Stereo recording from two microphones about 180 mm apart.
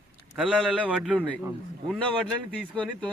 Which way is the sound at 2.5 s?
5° left (ahead or behind).